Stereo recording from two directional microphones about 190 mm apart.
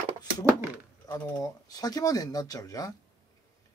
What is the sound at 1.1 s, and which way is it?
Speech, 20° left (ahead or behind).